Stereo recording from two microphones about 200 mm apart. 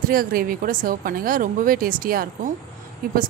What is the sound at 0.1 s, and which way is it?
Speech, 45° right (ahead or behind).